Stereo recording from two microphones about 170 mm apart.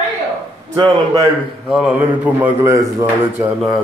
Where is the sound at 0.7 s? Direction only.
35° right (ahead or behind).